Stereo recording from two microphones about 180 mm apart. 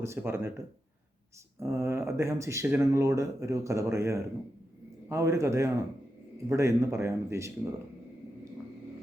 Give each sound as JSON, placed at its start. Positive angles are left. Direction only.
{"t": 0.0, "sound": "speech", "side_deg": -15}
{"t": 1.5, "sound": "speech", "side_deg": -15}